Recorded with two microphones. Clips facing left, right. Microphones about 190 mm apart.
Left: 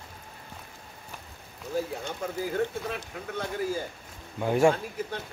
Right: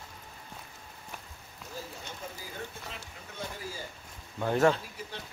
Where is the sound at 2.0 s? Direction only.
65° left (ahead or behind).